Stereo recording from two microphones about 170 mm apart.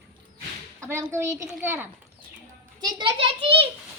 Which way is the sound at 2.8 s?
30° right (ahead or behind).